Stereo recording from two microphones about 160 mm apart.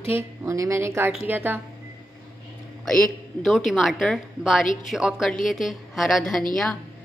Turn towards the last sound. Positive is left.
turn(degrees=0)  # may be behind; listen again after turning